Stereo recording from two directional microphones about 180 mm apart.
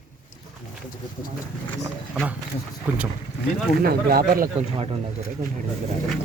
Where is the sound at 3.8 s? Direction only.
55° right (ahead or behind).